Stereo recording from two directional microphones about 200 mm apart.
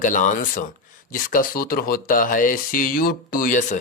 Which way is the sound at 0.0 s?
40° left (ahead or behind).